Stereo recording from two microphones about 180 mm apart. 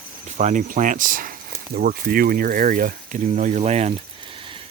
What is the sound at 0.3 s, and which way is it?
Speech, 45° right (ahead or behind).